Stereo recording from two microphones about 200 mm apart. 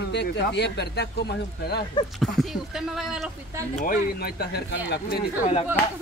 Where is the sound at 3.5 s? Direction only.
15° right (ahead or behind).